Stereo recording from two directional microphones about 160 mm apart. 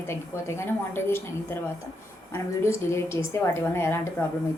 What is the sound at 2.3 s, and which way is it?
Speech, 15° left (ahead or behind).